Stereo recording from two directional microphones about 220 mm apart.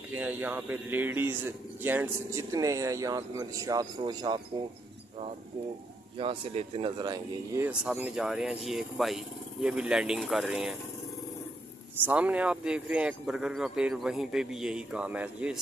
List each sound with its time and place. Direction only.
0.1 s a man's voice: 5° right (ahead or behind)
6.1 s speech: 25° right (ahead or behind); by 10.8 s centre (ahead or behind)
12.0 s speech: 5° right (ahead or behind)